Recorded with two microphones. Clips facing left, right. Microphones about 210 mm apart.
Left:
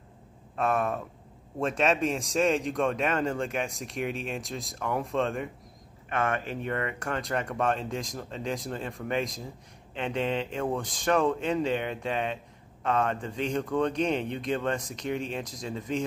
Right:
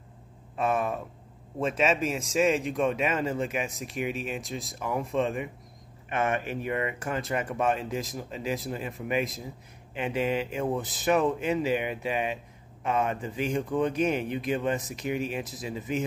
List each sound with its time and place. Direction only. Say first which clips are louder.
0.6 s speech: even; centre (ahead or behind)
6.0 s speech: right 1 dB; 20° right (ahead or behind)
6.3 s a man's voice: right 1 dB; 10° right (ahead or behind)